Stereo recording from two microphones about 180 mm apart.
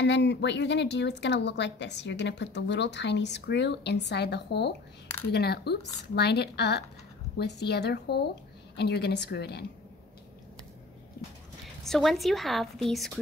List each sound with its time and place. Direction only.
0.0 s a woman's voice: 75° left (ahead or behind)
11.8 s a woman's voice: centre (ahead or behind)